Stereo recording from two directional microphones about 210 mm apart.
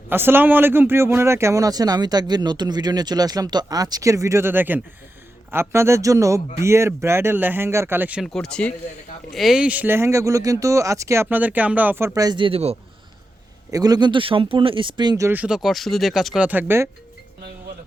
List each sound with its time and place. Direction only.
0.1 s speech: 10° right (ahead or behind); by 12.7 s 25° right (ahead or behind)
13.7 s speech: 15° right (ahead or behind)